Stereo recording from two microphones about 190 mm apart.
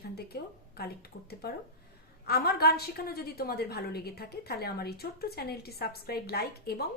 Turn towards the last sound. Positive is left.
turn(degrees=55)  # may be behind; listen again after turning